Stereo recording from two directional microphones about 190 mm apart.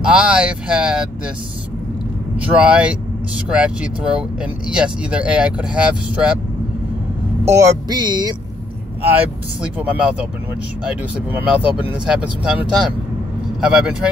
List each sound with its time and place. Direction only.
0.0 s speech: 5° right (ahead or behind)
2.5 s speech: 5° right (ahead or behind)
7.4 s speech: 20° right (ahead or behind)
9.6 s speech: 5° right (ahead or behind)
11.3 s speech: 5° right (ahead or behind)